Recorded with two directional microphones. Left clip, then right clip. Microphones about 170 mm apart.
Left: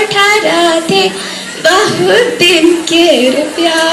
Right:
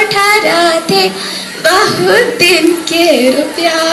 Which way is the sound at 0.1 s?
35° left (ahead or behind).